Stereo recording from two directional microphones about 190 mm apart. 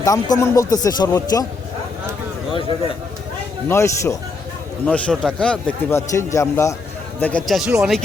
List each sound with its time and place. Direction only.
0.0 s speech: 15° left (ahead or behind)
3.7 s speech: 15° left (ahead or behind); by 8.0 s centre (ahead or behind)